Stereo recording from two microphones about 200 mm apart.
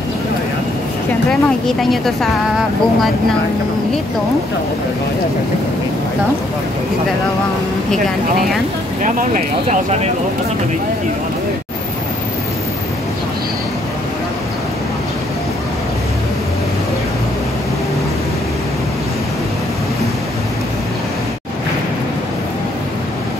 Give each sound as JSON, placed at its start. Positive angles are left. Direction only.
{"t": 1.3, "sound": "speech", "side_deg": 0}
{"t": 9.0, "sound": "speech", "side_deg": -40}